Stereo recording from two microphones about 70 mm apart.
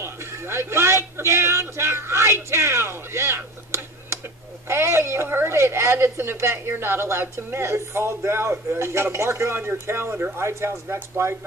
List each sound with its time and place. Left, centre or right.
0.0 s a man's voice: right